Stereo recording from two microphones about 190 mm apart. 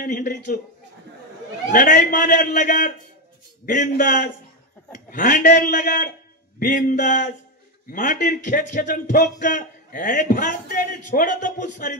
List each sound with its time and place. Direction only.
0.0 s a man's voice: 45° left (ahead or behind)
1.7 s a man's voice: 45° left (ahead or behind)